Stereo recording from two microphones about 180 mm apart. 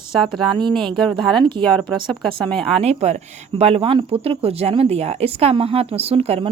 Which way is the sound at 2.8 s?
35° right (ahead or behind).